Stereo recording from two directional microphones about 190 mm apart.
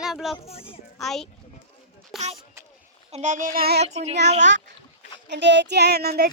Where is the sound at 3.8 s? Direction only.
35° right (ahead or behind).